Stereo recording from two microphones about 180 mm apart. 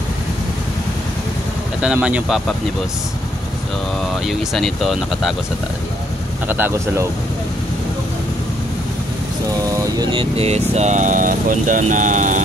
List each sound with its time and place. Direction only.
1.8 s speech: 5° right (ahead or behind)
4.1 s speech: centre (ahead or behind)
6.4 s speech: 10° right (ahead or behind)
9.8 s vehicle: 20° right (ahead or behind)
10.3 s speech: 35° right (ahead or behind)